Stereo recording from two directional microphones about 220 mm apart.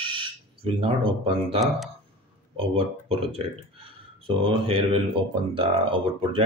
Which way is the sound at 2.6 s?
25° right (ahead or behind).